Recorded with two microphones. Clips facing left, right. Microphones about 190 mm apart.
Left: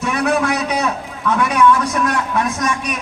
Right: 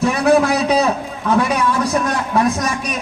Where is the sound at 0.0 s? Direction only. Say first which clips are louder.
Right 4 dB; 30° right (ahead or behind).